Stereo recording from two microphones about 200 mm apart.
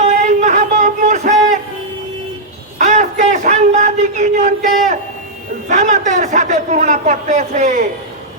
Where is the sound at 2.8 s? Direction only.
35° right (ahead or behind).